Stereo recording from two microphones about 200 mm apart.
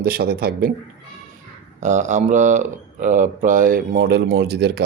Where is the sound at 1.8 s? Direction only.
35° right (ahead or behind).